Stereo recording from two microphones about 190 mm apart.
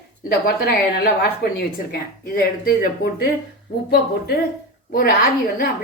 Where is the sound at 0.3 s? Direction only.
55° left (ahead or behind).